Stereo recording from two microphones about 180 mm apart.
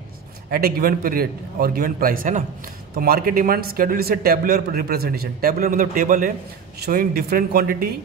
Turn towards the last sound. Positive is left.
turn(degrees=-60)  # may be behind; listen again after turning